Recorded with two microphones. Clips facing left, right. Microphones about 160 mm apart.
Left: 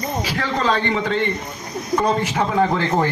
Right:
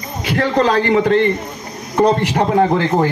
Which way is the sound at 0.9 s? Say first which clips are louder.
Right 8 dB; 55° right (ahead or behind).